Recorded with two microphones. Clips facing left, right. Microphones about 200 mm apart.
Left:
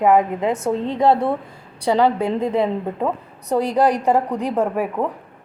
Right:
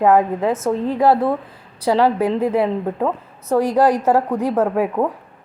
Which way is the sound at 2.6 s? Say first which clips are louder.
Right 2 dB; 10° left (ahead or behind).